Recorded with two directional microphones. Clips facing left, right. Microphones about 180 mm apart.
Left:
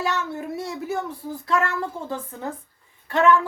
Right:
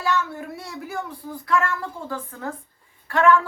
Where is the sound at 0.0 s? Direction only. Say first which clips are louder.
Right 1 dB; 20° left (ahead or behind).